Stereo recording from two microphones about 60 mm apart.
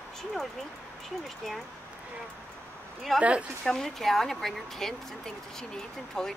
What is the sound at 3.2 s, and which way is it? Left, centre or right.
Speech, right.